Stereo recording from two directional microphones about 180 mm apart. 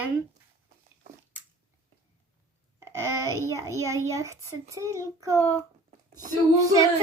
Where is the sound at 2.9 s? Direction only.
15° right (ahead or behind).